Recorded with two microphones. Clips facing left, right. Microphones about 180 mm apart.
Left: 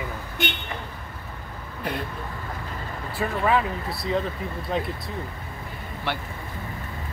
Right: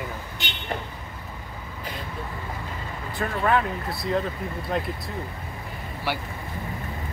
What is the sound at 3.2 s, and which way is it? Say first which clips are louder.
Speech: even; centre (ahead or behind).